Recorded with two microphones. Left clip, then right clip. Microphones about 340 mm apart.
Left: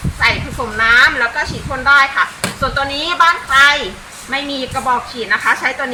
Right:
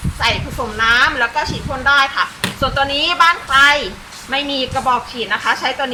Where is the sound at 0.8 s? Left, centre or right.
Centre.